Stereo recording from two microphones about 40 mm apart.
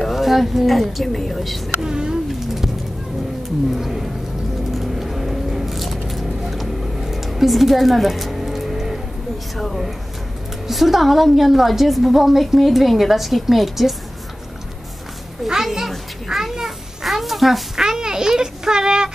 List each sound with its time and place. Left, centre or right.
0.1 s a woman's voice: centre
1.8 s speech: centre
3.7 s speech: centre
4.6 s vehicle: centre
9.6 s a woman's voice: centre
15.4 s a child's voice: centre
16.3 s a sound: centre
17.7 s a sound: centre